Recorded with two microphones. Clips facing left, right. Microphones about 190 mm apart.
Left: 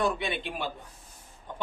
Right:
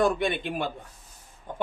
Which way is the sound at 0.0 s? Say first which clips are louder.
Right 5 dB; 50° right (ahead or behind).